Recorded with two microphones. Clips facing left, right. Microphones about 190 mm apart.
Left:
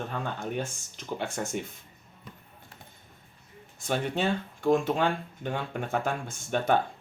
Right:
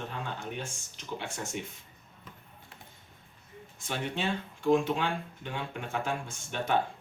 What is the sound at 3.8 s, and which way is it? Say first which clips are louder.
Speech: left 5 dB; 45° left (ahead or behind).